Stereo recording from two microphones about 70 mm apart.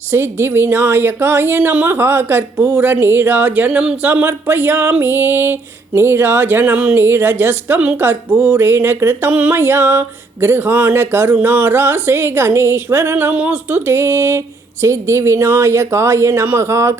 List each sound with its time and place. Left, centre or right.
0.1 s a woman's voice: right; by 4.1 s centre
4.1 s a woman's voice: right
9.3 s music: right
9.6 s a woman's voice: right